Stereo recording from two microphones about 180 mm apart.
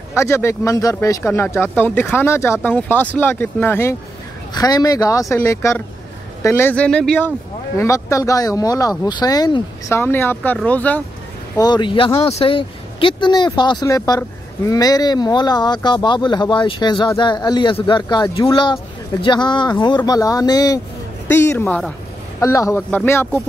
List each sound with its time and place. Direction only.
0.1 s speech: 15° left (ahead or behind)
11.5 s speech: 25° left (ahead or behind)